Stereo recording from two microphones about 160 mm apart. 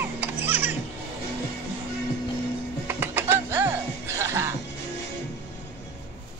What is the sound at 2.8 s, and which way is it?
Music, 15° right (ahead or behind).